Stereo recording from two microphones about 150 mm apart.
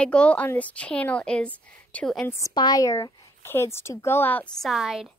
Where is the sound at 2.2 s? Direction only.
20° left (ahead or behind).